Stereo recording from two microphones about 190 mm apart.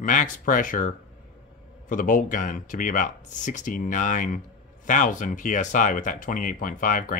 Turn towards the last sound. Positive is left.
turn(degrees=45)  # may be behind; listen again after turning